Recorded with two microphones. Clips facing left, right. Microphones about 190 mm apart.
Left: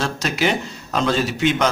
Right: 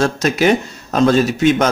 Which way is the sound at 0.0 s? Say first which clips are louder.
Right 7 dB; 45° right (ahead or behind).